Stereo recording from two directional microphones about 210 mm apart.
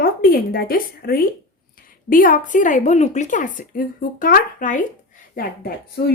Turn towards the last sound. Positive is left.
turn(degrees=45)  # may be behind; listen again after turning